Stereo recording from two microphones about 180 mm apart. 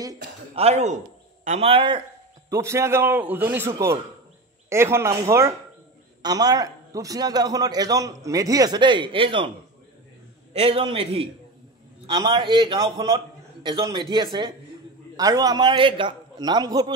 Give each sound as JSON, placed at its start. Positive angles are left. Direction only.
{"t": 0.6, "sound": "a man's voice", "side_deg": -35}
{"t": 2.5, "sound": "a man's voice", "side_deg": -15}
{"t": 10.5, "sound": "a man's voice", "side_deg": -35}